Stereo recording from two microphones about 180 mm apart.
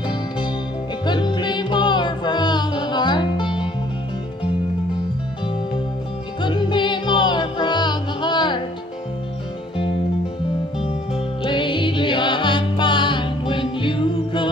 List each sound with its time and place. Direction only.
1.0 s music: 25° left (ahead or behind)
6.4 s music: 25° left (ahead or behind)
11.4 s music: 25° left (ahead or behind)